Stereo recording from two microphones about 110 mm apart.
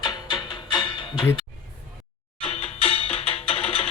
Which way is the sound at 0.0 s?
40° left (ahead or behind).